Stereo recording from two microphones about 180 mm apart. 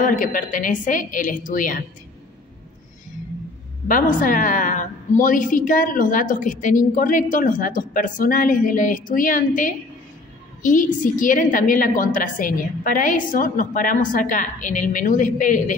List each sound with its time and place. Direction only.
0.0 s a woman's voice: 50° left (ahead or behind)
3.8 s a woman's voice: 50° left (ahead or behind)